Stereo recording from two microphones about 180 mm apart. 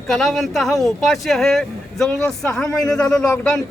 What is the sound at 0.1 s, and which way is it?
Speech, centre (ahead or behind).